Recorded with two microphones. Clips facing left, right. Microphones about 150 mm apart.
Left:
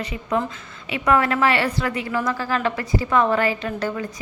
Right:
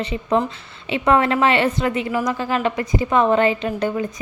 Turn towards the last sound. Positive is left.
turn(degrees=-20)  # may be behind; listen again after turning